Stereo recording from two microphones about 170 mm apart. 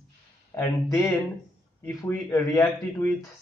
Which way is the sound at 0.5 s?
15° left (ahead or behind).